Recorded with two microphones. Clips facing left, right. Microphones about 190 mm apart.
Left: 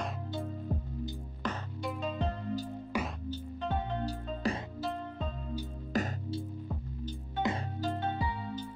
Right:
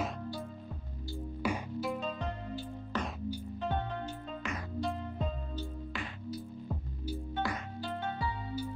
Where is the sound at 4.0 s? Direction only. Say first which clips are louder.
Left 6 dB; 35° left (ahead or behind).